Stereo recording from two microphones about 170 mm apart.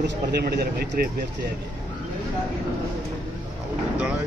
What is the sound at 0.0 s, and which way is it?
Speech, 75° right (ahead or behind).